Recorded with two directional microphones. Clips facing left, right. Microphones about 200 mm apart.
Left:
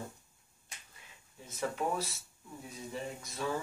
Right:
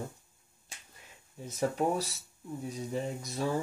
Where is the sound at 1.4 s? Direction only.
40° right (ahead or behind).